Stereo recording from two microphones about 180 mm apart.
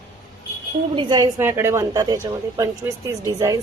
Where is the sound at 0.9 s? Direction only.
25° right (ahead or behind).